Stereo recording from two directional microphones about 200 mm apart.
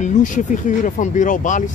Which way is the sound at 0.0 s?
40° left (ahead or behind).